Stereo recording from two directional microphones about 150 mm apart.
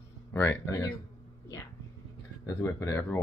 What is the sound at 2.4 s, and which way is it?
Speech, 20° left (ahead or behind).